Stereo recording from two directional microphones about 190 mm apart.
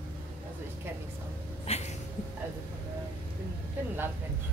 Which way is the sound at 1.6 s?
35° left (ahead or behind).